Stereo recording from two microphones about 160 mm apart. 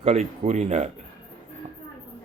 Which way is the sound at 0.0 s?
45° right (ahead or behind).